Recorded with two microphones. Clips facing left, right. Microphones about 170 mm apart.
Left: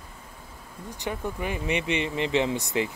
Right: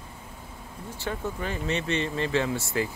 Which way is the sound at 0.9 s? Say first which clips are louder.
Left 1 dB; 15° left (ahead or behind).